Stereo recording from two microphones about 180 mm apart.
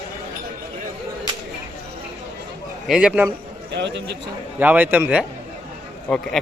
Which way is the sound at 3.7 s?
75° right (ahead or behind).